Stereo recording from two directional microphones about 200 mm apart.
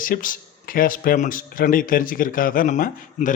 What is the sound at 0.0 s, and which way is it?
Speech, 45° left (ahead or behind).